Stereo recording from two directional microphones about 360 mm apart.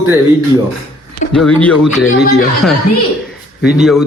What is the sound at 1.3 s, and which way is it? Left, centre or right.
Speech, centre.